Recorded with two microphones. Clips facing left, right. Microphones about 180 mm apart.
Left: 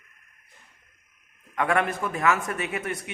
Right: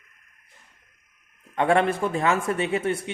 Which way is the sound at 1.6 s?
30° right (ahead or behind).